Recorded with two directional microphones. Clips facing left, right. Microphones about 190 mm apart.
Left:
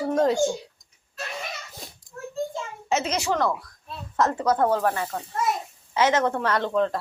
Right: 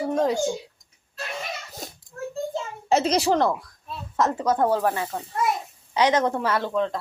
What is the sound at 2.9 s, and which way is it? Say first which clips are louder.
Speech: right 5 dB; 35° right (ahead or behind).